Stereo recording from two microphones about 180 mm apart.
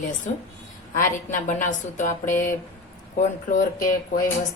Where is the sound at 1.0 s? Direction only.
45° left (ahead or behind).